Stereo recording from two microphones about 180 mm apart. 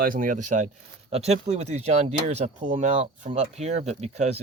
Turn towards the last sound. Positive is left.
turn(degrees=-35)  # may be behind; listen again after turning